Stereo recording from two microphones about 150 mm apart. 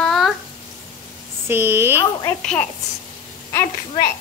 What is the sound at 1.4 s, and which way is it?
Speech, 15° right (ahead or behind).